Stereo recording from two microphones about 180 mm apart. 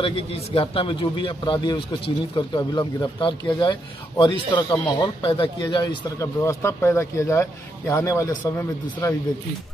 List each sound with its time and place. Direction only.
0.0 s a man's voice: 30° left (ahead or behind); by 9.1 s 15° left (ahead or behind)